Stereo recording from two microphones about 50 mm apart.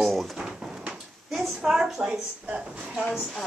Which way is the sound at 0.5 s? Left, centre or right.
Centre.